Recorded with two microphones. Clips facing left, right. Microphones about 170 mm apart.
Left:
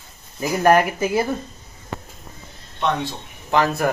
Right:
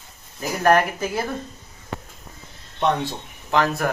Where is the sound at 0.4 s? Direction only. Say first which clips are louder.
Left 2 dB; 10° left (ahead or behind).